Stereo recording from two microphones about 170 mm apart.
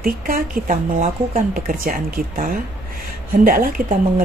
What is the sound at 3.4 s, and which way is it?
Speech, 55° right (ahead or behind).